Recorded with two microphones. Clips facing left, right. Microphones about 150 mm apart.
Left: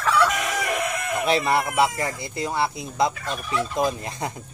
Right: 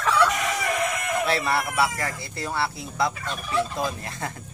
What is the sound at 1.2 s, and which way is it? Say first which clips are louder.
Speech: left 7 dB; 20° left (ahead or behind).